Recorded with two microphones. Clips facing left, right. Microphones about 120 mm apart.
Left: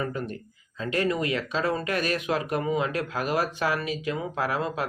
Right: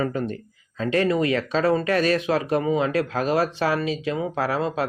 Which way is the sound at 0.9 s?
30° right (ahead or behind).